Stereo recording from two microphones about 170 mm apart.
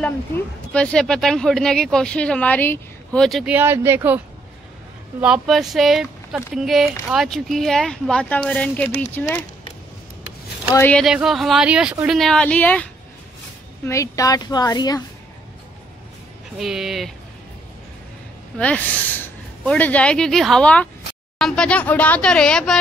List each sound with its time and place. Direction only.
0.7 s speech: 5° left (ahead or behind)
3.5 s speech: 15° right (ahead or behind)
5.2 s speech: 5° right (ahead or behind)
10.7 s speech: 15° left (ahead or behind)
11.1 s speech: centre (ahead or behind)
12.2 s speech: 5° left (ahead or behind)
13.8 s a woman's voice: 20° left (ahead or behind)
16.5 s speech: centre (ahead or behind)
18.6 s speech: 10° left (ahead or behind)